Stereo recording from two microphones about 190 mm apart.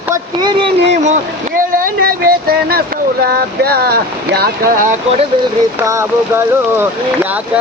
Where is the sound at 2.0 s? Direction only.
50° right (ahead or behind).